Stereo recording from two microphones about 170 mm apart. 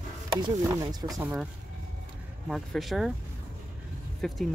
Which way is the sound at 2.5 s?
Centre (ahead or behind).